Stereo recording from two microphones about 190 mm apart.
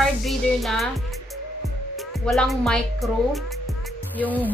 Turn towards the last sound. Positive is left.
turn(degrees=10)  # may be behind; listen again after turning